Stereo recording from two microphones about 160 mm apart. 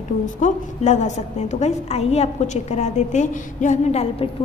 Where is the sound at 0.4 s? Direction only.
45° left (ahead or behind).